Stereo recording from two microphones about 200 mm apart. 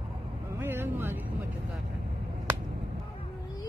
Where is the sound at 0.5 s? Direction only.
10° right (ahead or behind).